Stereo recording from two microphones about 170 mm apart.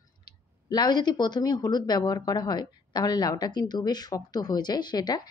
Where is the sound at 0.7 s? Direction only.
25° left (ahead or behind).